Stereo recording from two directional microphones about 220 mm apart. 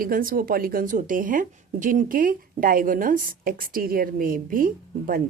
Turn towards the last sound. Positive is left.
turn(degrees=-40)  # may be behind; listen again after turning